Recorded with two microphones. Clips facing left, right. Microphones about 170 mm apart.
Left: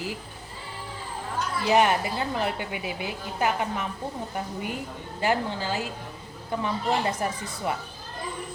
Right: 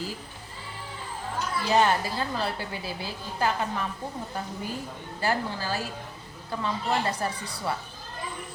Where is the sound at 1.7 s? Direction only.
20° left (ahead or behind).